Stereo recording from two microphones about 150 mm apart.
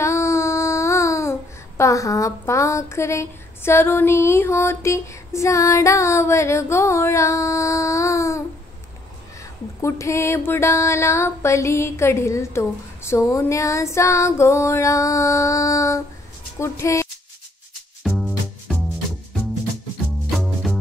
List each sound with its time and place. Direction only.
0.0 s child singing: 20° left (ahead or behind)
1.8 s a woman's voice: 20° left (ahead or behind)
18.0 s music: 5° right (ahead or behind)
20.2 s music: centre (ahead or behind)